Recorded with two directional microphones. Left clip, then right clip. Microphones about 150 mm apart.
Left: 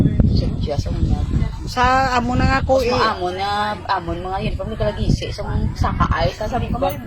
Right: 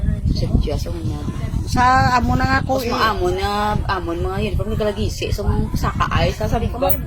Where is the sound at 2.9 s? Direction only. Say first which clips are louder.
Even; 75° right (ahead or behind).